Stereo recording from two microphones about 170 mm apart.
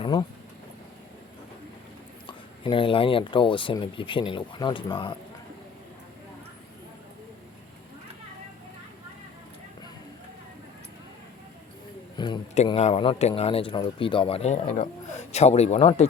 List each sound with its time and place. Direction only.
0.0 s speech: 25° left (ahead or behind)
2.2 s speech: 30° left (ahead or behind)
12.1 s a sound: 25° left (ahead or behind)
12.6 s speech: 35° left (ahead or behind)